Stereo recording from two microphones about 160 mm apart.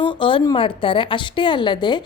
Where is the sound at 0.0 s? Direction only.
30° left (ahead or behind).